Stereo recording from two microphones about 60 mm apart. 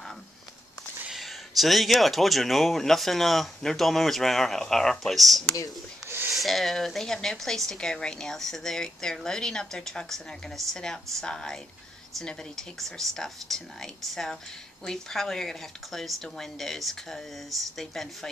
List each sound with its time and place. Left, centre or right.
1.1 s speech: centre
6.0 s a sound: right
6.3 s a woman's voice: centre